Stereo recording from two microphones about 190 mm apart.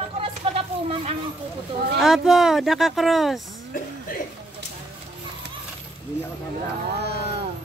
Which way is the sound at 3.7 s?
45° left (ahead or behind).